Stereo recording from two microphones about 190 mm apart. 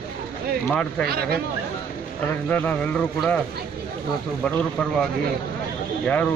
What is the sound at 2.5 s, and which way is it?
Speech, 5° left (ahead or behind).